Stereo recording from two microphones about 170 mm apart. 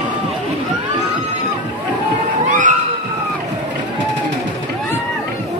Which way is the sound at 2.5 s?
50° right (ahead or behind).